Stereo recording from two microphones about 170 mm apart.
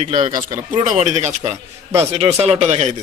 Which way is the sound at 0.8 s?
45° right (ahead or behind).